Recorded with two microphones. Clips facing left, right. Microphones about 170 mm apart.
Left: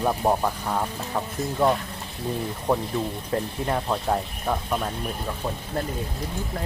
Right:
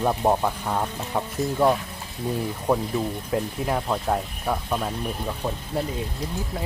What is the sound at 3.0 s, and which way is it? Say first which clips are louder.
Speech: right 1 dB; 5° right (ahead or behind).